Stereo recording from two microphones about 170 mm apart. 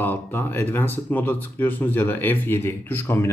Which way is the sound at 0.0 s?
10° left (ahead or behind).